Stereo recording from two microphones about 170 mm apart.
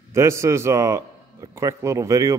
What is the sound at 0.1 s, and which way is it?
A man's voice, 15° right (ahead or behind).